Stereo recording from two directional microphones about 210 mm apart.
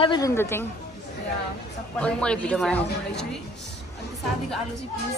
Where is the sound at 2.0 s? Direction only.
5° left (ahead or behind).